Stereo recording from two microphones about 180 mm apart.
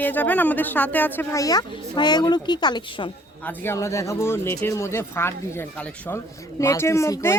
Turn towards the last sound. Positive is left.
turn(degrees=15)  # may be behind; listen again after turning